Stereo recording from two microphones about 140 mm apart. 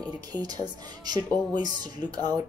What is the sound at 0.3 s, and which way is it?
A woman's voice, 30° right (ahead or behind).